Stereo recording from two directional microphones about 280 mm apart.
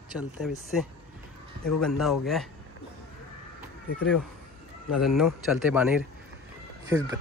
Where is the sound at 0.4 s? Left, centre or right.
Centre.